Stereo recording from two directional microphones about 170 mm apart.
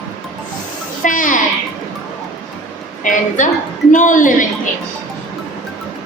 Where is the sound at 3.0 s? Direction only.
50° left (ahead or behind).